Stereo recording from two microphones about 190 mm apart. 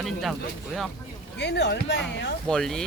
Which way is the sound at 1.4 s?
65° left (ahead or behind).